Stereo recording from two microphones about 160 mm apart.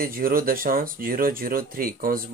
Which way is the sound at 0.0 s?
65° right (ahead or behind).